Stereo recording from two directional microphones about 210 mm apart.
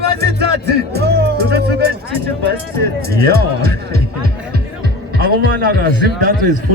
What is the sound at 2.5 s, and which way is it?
Speech, 45° right (ahead or behind).